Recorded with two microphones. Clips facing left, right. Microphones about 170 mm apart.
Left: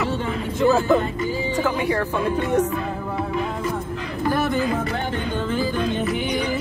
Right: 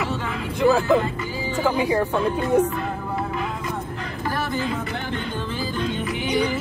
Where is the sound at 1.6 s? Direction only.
20° right (ahead or behind).